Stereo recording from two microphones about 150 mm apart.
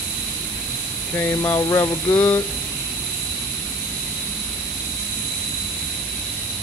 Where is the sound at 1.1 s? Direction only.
20° left (ahead or behind).